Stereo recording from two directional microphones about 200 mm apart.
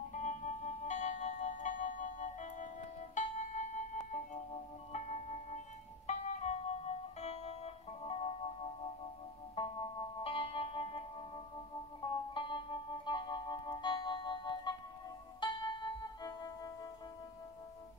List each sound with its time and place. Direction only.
0.1 s music: 35° left (ahead or behind)
9.6 s music: 25° left (ahead or behind)